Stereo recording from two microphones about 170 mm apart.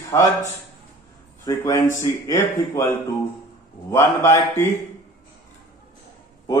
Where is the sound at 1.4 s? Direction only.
20° left (ahead or behind).